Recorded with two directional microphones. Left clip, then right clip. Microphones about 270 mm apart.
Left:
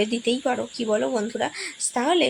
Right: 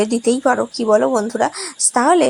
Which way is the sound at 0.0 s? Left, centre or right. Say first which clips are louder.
Right 7 dB; centre.